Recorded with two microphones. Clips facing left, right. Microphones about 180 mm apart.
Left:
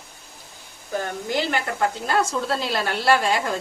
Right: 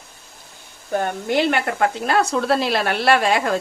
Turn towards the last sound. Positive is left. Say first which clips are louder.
# right 3 dB
turn(degrees=-70)  # may be behind; listen again after turning